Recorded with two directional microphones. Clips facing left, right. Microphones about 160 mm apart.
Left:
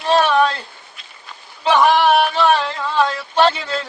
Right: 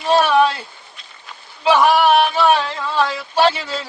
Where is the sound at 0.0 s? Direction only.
10° right (ahead or behind).